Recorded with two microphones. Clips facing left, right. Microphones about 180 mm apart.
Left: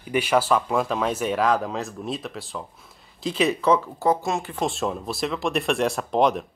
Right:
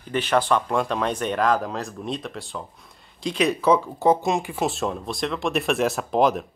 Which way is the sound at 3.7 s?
15° right (ahead or behind).